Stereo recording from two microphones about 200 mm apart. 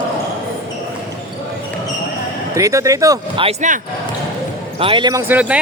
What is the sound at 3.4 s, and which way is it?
Speech, 40° right (ahead or behind).